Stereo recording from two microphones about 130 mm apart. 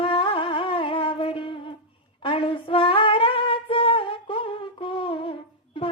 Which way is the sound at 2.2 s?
40° left (ahead or behind).